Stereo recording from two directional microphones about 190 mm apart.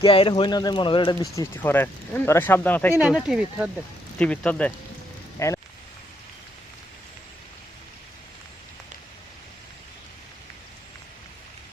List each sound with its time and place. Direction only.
0.0 s speech: 30° left (ahead or behind); by 2.9 s 10° left (ahead or behind)
2.9 s speech: 5° right (ahead or behind); by 5.5 s 15° left (ahead or behind)